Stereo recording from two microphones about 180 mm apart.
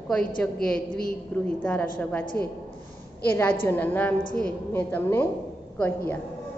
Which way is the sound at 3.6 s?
10° left (ahead or behind).